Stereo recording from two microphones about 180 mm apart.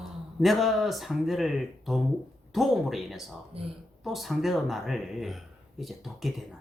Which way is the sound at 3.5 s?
30° right (ahead or behind).